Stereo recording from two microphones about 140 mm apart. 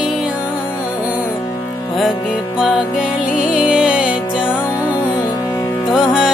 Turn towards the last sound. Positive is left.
turn(degrees=-5)  # may be behind; listen again after turning